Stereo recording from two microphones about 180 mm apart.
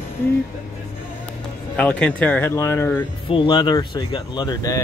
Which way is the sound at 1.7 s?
5° left (ahead or behind).